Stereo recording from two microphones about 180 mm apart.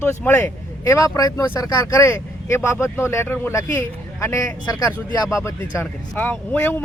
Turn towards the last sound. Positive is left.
turn(degrees=10)  # may be behind; listen again after turning